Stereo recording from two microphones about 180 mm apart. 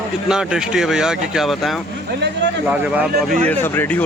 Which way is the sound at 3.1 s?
50° right (ahead or behind).